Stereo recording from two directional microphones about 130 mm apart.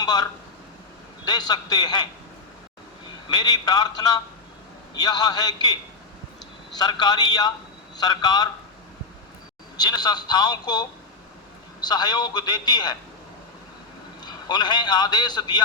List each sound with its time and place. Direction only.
0.0 s a man's voice: 30° left (ahead or behind)
3.2 s a man's voice: 30° left (ahead or behind)
6.7 s a man's voice: 30° left (ahead or behind)
9.7 s a man's voice: 30° left (ahead or behind)
14.2 s a man's voice: 30° left (ahead or behind)